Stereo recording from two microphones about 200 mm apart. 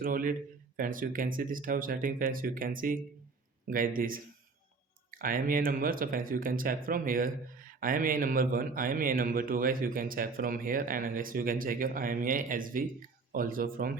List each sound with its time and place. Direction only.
0.0 s speech: 45° right (ahead or behind)